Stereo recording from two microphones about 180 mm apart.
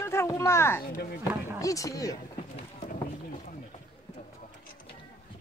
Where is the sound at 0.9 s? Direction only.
60° left (ahead or behind).